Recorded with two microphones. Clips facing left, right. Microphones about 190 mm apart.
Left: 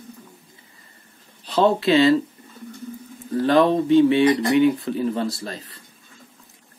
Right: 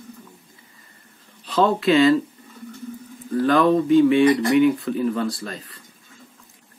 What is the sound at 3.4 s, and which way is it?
Speech, 30° left (ahead or behind).